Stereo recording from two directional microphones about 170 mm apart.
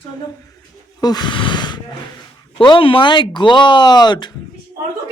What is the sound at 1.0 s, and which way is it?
Speech, 25° left (ahead or behind).